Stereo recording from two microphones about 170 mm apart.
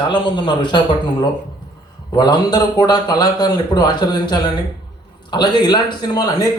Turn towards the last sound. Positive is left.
turn(degrees=20)  # may be behind; listen again after turning